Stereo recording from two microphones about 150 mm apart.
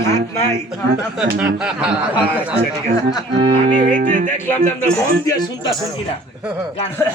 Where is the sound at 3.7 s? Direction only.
60° right (ahead or behind).